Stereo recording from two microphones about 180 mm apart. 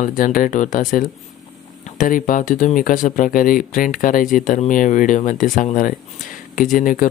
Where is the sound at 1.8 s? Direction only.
45° left (ahead or behind).